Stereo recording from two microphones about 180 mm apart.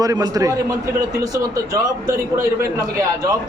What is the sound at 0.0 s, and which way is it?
Speech, 20° right (ahead or behind).